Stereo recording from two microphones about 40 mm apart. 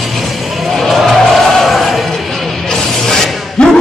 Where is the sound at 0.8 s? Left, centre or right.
Centre.